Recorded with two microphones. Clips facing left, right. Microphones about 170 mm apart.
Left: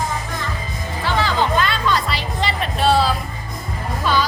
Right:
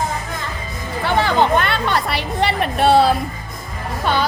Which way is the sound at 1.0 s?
60° right (ahead or behind).